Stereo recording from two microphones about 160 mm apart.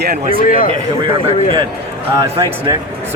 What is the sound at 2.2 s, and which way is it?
Speech, 20° right (ahead or behind).